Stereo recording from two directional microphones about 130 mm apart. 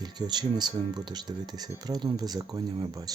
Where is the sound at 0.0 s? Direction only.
35° right (ahead or behind).